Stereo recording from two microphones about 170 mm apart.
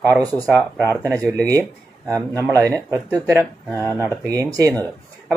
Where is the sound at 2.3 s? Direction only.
20° right (ahead or behind).